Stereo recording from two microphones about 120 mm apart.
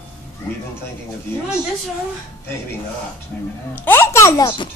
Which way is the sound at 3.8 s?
20° left (ahead or behind).